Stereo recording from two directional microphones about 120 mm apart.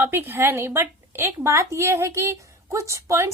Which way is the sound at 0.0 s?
20° right (ahead or behind).